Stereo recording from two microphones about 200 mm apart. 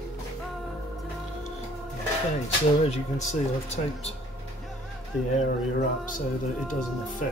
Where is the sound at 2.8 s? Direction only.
30° left (ahead or behind).